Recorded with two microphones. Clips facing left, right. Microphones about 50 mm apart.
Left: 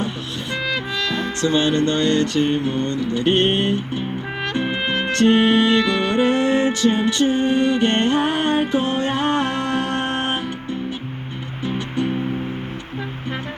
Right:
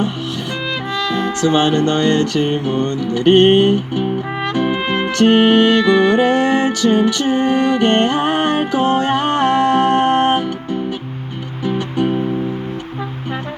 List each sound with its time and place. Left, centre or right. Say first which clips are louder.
1.2 s music: right 5 dB; right
4.5 s music: right 6 dB; right
5.2 s music: right 4 dB; right